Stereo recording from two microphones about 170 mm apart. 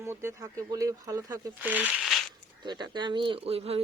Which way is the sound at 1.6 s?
10° right (ahead or behind).